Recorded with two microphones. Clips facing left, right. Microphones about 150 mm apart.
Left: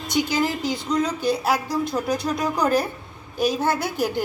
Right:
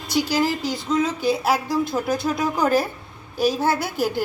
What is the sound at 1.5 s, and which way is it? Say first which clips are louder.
Speech: right 2 dB; 20° left (ahead or behind).